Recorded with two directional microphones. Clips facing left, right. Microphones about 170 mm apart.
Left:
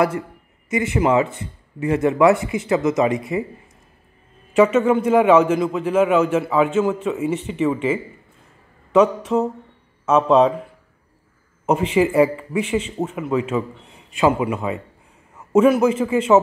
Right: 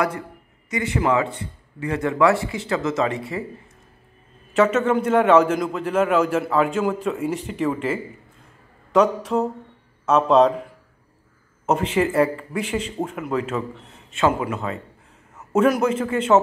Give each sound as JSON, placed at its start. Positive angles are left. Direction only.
{"t": 0.7, "sound": "speech", "side_deg": 25}
{"t": 4.6, "sound": "speech", "side_deg": 10}
{"t": 11.6, "sound": "a man's voice", "side_deg": 10}